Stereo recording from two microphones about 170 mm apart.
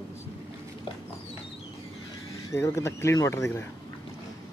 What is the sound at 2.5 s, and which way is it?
Speech, 15° left (ahead or behind).